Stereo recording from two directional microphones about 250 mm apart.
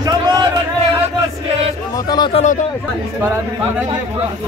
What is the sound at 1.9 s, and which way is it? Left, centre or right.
Speech, centre.